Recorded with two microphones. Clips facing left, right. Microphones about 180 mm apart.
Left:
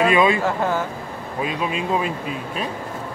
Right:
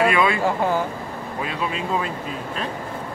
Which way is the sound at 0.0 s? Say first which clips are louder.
Left 2 dB; 20° left (ahead or behind).